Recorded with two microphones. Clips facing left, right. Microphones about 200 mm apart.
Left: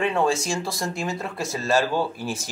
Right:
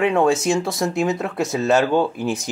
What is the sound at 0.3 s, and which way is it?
Speech, 20° right (ahead or behind).